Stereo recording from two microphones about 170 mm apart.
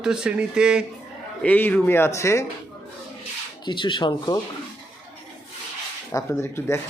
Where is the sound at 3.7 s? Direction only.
30° left (ahead or behind).